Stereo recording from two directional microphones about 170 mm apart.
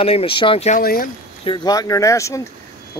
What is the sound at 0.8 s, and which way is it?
Speech, 60° left (ahead or behind).